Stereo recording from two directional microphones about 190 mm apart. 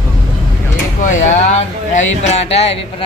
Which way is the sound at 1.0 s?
40° left (ahead or behind).